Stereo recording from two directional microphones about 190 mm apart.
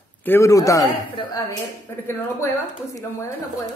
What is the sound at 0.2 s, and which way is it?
Speech, 15° left (ahead or behind).